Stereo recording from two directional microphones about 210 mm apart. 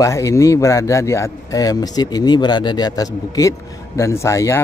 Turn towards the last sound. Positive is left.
turn(degrees=15)  # may be behind; listen again after turning